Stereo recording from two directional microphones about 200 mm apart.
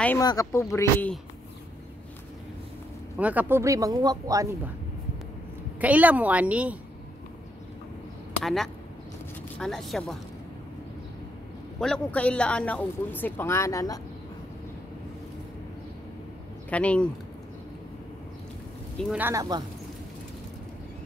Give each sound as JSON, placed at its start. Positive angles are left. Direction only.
{"t": 0.2, "sound": "speech", "side_deg": 20}
{"t": 3.2, "sound": "speech", "side_deg": -10}
{"t": 5.8, "sound": "speech", "side_deg": -10}
{"t": 9.6, "sound": "speech", "side_deg": 0}
{"t": 11.8, "sound": "speech", "side_deg": 5}
{"t": 16.7, "sound": "speech", "side_deg": 5}
{"t": 18.9, "sound": "speech", "side_deg": -5}